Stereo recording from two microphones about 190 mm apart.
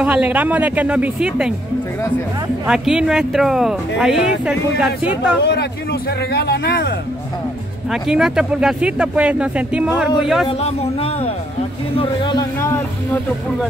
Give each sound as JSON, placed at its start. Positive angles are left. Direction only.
{"t": 0.0, "sound": "a woman's voice", "side_deg": -5}
{"t": 2.6, "sound": "speech", "side_deg": -5}
{"t": 5.4, "sound": "speech", "side_deg": 60}
{"t": 7.9, "sound": "speech", "side_deg": -5}
{"t": 10.6, "sound": "speech", "side_deg": 30}
{"t": 12.0, "sound": "a sound", "side_deg": 20}